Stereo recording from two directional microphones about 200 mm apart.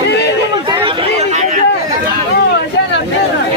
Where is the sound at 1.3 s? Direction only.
35° right (ahead or behind).